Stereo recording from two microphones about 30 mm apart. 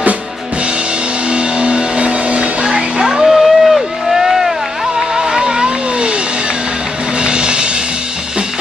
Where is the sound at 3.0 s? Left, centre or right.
Centre.